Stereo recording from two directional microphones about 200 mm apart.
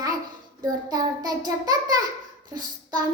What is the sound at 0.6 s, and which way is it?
Child singing, 20° right (ahead or behind).